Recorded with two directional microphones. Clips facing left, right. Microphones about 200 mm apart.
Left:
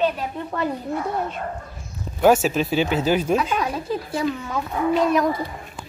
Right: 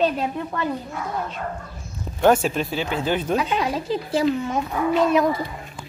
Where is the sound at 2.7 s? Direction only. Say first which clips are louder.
Left 5 dB; 20° left (ahead or behind).